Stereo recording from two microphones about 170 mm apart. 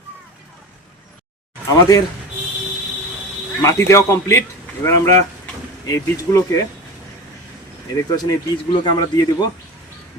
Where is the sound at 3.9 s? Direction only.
15° left (ahead or behind).